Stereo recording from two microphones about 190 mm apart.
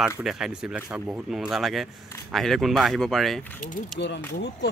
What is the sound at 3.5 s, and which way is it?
Speech, 45° left (ahead or behind).